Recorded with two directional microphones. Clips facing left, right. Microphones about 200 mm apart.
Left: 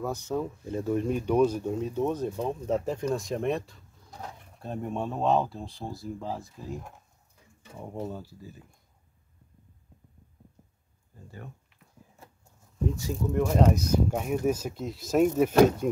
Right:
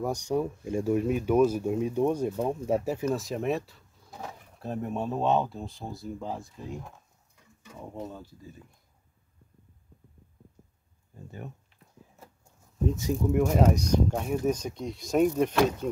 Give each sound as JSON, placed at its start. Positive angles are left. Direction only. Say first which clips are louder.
{"t": 0.0, "sound": "speech", "louder": "right 2 dB", "side_deg": -15}
{"t": 8.1, "sound": "speech", "louder": "left 4 dB", "side_deg": 10}
{"t": 11.2, "sound": "speech", "louder": "right 3 dB", "side_deg": -20}
{"t": 12.9, "sound": "speech", "louder": "right 4 dB", "side_deg": -20}
{"t": 13.5, "sound": "speech", "louder": "even", "side_deg": -5}
{"t": 13.8, "sound": "speech", "louder": "even", "side_deg": 5}